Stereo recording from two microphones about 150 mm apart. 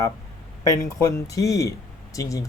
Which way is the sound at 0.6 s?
20° left (ahead or behind).